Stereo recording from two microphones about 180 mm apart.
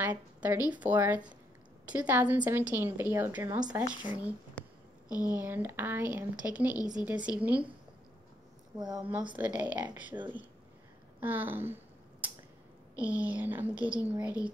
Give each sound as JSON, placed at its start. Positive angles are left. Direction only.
{"t": 0.0, "sound": "a woman's voice", "side_deg": -10}
{"t": 5.0, "sound": "speech", "side_deg": 20}
{"t": 5.4, "sound": "a woman's voice", "side_deg": -10}
{"t": 8.7, "sound": "speech", "side_deg": -20}
{"t": 9.4, "sound": "a woman's voice", "side_deg": -10}
{"t": 11.1, "sound": "a sound", "side_deg": -10}
{"t": 13.0, "sound": "a woman's voice", "side_deg": -10}